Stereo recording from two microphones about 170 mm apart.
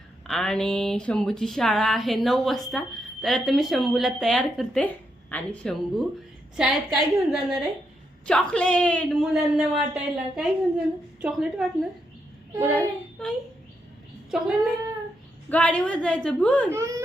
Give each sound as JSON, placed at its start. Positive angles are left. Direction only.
{"t": 0.3, "sound": "a woman's voice", "side_deg": 5}
{"t": 12.5, "sound": "speech", "side_deg": -15}
{"t": 14.3, "sound": "speech", "side_deg": -5}
{"t": 15.4, "sound": "a woman's voice", "side_deg": 5}